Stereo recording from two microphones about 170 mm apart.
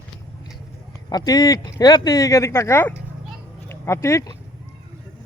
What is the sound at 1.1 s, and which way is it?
Speech, 25° left (ahead or behind).